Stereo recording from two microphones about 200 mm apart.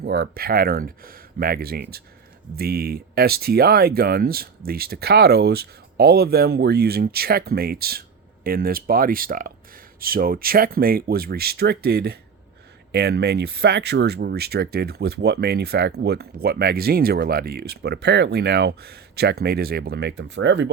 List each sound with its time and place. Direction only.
0.0 s speech: 50° right (ahead or behind); by 20.7 s 65° right (ahead or behind)